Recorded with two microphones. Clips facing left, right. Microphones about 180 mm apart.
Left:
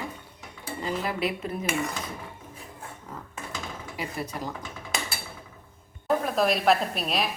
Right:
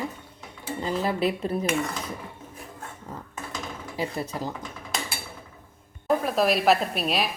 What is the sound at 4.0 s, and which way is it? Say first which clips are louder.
Speech: right 4 dB; 30° right (ahead or behind).